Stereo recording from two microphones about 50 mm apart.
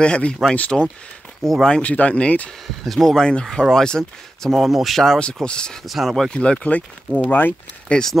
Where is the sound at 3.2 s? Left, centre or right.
Centre.